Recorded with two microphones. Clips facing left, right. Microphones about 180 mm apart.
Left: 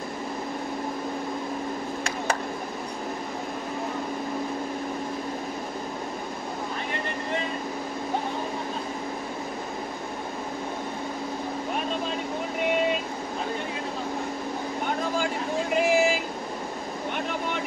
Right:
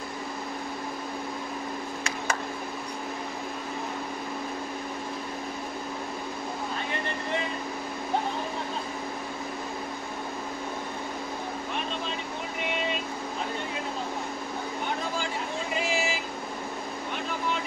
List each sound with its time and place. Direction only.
15.8 s vehicle: 55° left (ahead or behind)